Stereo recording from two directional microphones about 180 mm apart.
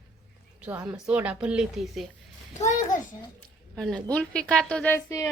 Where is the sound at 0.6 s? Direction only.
5° right (ahead or behind).